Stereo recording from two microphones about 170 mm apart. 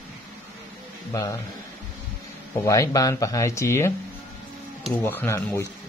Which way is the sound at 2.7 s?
20° left (ahead or behind).